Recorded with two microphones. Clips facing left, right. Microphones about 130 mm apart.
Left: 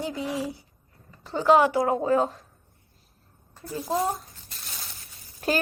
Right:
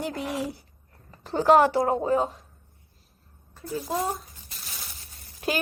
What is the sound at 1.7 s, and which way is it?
Speech, 30° right (ahead or behind).